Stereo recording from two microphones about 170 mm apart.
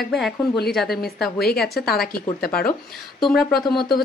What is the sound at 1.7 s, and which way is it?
Speech, 65° left (ahead or behind).